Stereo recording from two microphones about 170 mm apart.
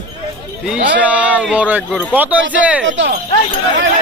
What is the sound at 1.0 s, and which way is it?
Speech, 10° right (ahead or behind).